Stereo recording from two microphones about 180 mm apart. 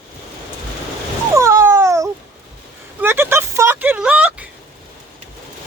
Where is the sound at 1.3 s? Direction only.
15° right (ahead or behind).